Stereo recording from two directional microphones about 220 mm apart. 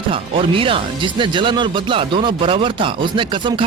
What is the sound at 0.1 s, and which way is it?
Speech, 25° right (ahead or behind).